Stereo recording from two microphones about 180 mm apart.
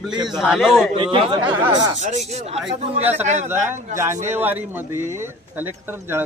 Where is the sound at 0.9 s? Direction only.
30° right (ahead or behind).